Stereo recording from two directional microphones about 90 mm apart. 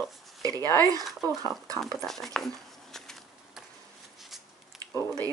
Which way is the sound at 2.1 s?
5° left (ahead or behind).